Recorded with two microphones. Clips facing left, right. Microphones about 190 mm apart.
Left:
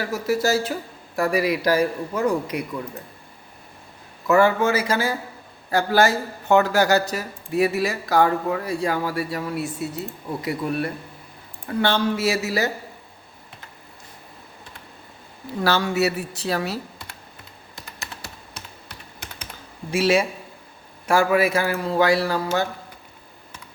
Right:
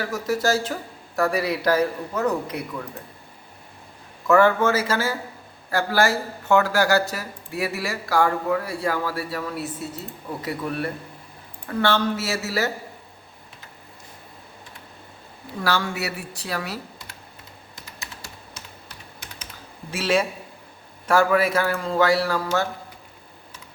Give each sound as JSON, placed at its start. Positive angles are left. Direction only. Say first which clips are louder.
{"t": 0.1, "sound": "a man's voice", "louder": "left 2 dB", "side_deg": 10}
{"t": 4.3, "sound": "a man's voice", "louder": "even", "side_deg": 10}
{"t": 11.8, "sound": "a man's voice", "louder": "left 1 dB", "side_deg": 15}
{"t": 15.6, "sound": "speech", "louder": "left 5 dB", "side_deg": 25}
{"t": 18.0, "sound": "computer keyboard", "louder": "left 3 dB", "side_deg": 65}
{"t": 19.9, "sound": "a man's voice", "louder": "left 3 dB", "side_deg": 10}